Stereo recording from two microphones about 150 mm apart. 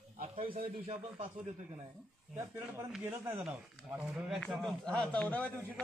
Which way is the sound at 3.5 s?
5° right (ahead or behind).